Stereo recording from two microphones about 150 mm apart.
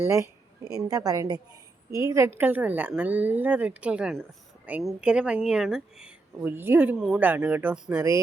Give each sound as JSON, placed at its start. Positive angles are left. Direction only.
{"t": 0.0, "sound": "a woman's voice", "side_deg": -20}